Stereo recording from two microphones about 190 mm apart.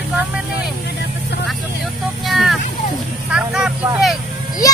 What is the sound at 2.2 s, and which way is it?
Speech, centre (ahead or behind).